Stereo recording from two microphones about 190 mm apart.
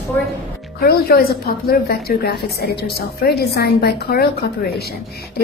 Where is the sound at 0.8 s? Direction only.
55° left (ahead or behind).